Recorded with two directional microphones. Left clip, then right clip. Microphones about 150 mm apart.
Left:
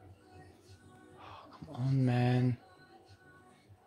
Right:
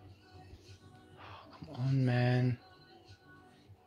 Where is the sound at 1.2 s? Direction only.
20° left (ahead or behind).